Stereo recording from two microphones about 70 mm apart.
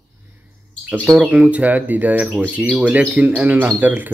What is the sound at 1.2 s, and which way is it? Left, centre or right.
Speech, centre.